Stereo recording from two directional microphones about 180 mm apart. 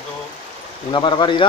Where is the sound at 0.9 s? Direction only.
25° left (ahead or behind).